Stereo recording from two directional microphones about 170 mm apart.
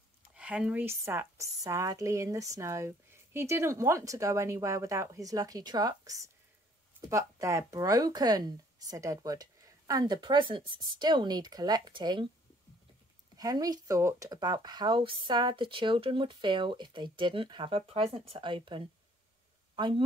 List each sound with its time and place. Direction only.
0.3 s speech: 5° right (ahead or behind); by 12.3 s 25° right (ahead or behind)
13.4 s speech: 20° right (ahead or behind)